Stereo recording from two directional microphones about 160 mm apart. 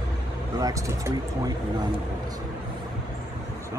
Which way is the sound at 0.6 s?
20° right (ahead or behind).